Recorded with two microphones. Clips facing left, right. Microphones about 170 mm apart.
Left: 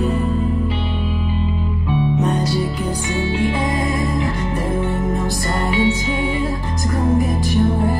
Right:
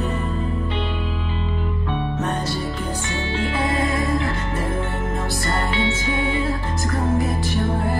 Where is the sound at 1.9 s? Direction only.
10° left (ahead or behind).